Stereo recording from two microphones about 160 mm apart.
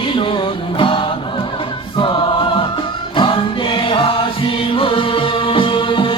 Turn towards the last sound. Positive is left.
turn(degrees=30)  # may be behind; listen again after turning